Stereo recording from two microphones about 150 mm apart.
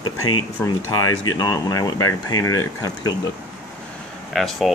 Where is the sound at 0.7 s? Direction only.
25° left (ahead or behind).